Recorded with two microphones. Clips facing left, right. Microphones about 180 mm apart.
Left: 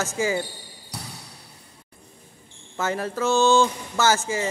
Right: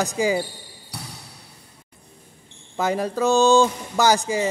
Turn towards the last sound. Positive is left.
turn(degrees=-15)  # may be behind; listen again after turning